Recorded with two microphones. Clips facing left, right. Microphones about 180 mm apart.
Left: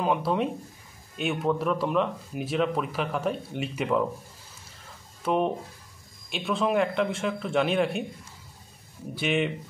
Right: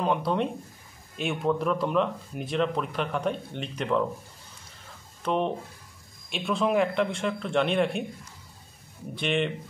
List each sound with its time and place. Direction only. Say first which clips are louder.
0.0 s speech: left 1 dB; 5° left (ahead or behind)
5.2 s speech: left 2 dB; 5° left (ahead or behind)
9.1 s speech: left 1 dB; 5° left (ahead or behind)